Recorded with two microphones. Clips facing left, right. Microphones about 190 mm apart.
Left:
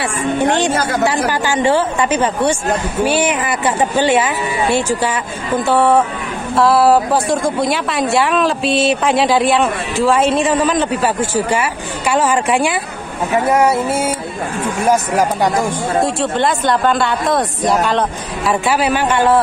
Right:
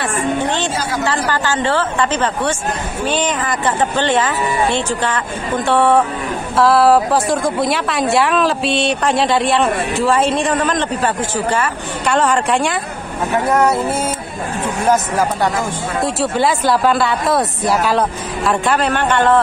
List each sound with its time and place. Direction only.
0.0 s music: 15° left (ahead or behind)
1.0 s a woman's voice: 10° left (ahead or behind)
16.0 s a woman's voice: 5° right (ahead or behind)